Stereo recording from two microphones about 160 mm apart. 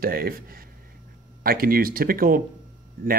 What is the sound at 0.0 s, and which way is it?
Speech, 65° right (ahead or behind).